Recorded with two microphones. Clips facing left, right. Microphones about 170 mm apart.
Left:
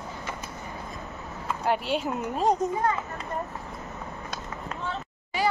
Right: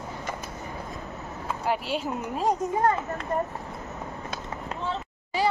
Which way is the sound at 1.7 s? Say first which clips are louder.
Left 2 dB; 5° right (ahead or behind).